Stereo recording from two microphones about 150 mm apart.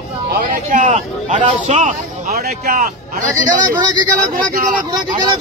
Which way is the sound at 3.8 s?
30° right (ahead or behind).